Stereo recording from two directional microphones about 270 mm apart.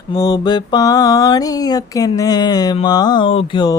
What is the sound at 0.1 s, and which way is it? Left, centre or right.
Mantra, centre.